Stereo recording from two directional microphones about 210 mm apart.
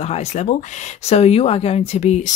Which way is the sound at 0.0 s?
30° left (ahead or behind).